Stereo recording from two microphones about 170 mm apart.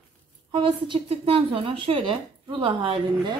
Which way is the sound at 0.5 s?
30° right (ahead or behind).